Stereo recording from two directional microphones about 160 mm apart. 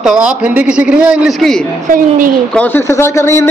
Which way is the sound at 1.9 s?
55° right (ahead or behind).